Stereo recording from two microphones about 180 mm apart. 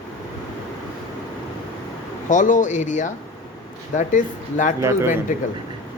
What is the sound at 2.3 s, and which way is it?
Speech, 45° left (ahead or behind).